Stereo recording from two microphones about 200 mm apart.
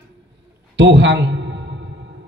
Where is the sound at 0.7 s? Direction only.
65° right (ahead or behind).